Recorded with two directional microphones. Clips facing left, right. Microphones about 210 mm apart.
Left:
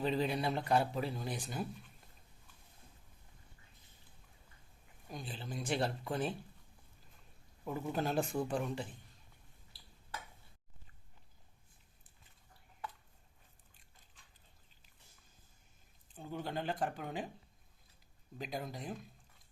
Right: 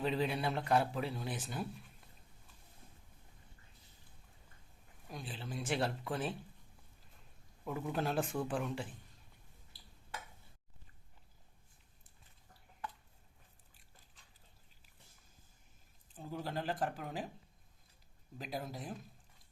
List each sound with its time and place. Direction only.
0.0 s a man's voice: centre (ahead or behind)
5.0 s a man's voice: centre (ahead or behind)
7.6 s a man's voice: centre (ahead or behind)
16.1 s a man's voice: centre (ahead or behind)
18.3 s a man's voice: centre (ahead or behind)